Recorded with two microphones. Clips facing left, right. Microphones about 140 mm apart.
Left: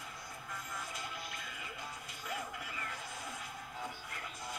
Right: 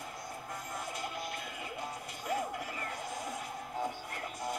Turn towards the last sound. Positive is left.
turn(degrees=-35)  # may be behind; listen again after turning